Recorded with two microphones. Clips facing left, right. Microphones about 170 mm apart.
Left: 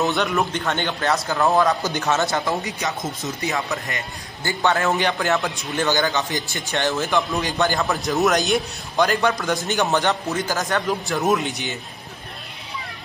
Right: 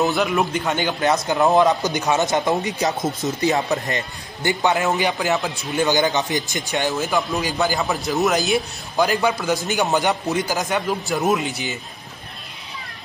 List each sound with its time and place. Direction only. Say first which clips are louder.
0.0 s a man's voice: right 2 dB; centre (ahead or behind)
1.0 s speech: right 3 dB; 20° right (ahead or behind)
3.0 s a man's voice: right 5 dB; centre (ahead or behind)
3.4 s speech: right 6 dB; 35° right (ahead or behind)
4.4 s a man's voice: right 1 dB; 15° right (ahead or behind)
4.9 s a man's voice: even; 5° right (ahead or behind)
5.9 s a man's voice: right 2 dB; 20° right (ahead or behind)
7.1 s a man's voice: even; centre (ahead or behind)
9.7 s a man's voice: even; 15° right (ahead or behind)
11.2 s a man's voice: even; centre (ahead or behind)